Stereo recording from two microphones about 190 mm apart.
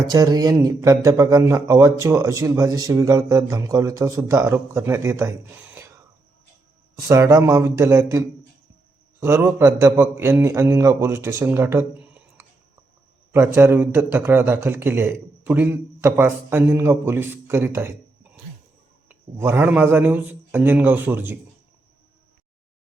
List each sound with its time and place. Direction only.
0.1 s a man's voice: 20° right (ahead or behind)
6.9 s a man's voice: 20° right (ahead or behind)
9.2 s a man's voice: 15° right (ahead or behind)
13.3 s a man's voice: 15° right (ahead or behind)